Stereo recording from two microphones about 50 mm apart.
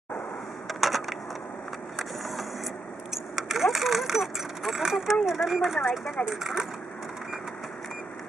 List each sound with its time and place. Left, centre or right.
0.7 s a sound: centre
3.3 s speech: centre
5.8 s speech: centre
6.4 s speech: centre